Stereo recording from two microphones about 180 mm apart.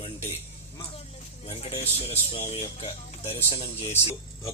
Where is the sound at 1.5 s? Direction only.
35° left (ahead or behind).